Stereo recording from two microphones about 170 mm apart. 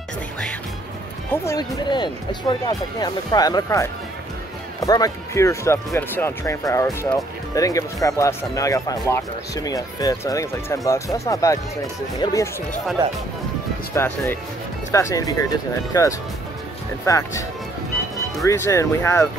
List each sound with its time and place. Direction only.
1.3 s speech: 15° left (ahead or behind)
13.9 s speech: 15° left (ahead or behind)